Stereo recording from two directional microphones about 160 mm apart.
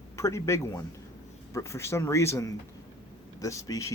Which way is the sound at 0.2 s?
20° left (ahead or behind).